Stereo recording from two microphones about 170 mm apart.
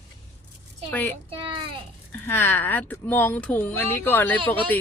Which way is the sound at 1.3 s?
30° right (ahead or behind).